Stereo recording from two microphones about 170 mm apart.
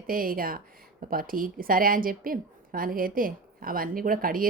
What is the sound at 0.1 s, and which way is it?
A woman's voice, 60° right (ahead or behind).